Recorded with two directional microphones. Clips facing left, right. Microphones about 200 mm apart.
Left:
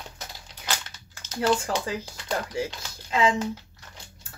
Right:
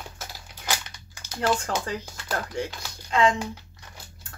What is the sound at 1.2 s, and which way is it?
Typing, 15° right (ahead or behind).